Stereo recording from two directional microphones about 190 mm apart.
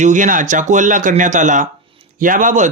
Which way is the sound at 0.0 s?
40° right (ahead or behind).